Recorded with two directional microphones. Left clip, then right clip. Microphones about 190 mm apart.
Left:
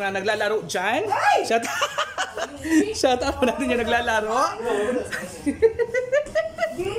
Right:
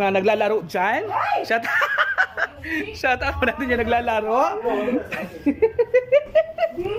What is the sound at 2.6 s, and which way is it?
Speech, 30° left (ahead or behind).